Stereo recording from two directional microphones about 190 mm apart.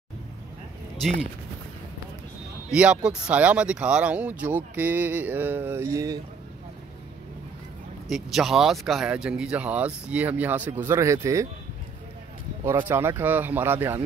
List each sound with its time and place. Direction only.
2.7 s speech: 5° right (ahead or behind)
8.1 s speech: centre (ahead or behind)
12.6 s speech: 15° right (ahead or behind)